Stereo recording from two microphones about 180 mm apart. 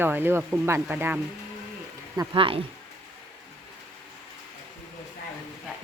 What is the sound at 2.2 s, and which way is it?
Speech, 30° right (ahead or behind).